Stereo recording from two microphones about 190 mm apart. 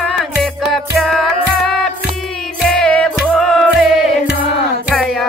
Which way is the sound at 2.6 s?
5° left (ahead or behind).